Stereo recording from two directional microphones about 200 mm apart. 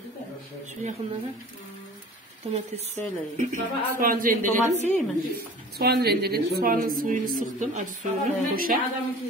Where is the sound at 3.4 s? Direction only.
40° right (ahead or behind).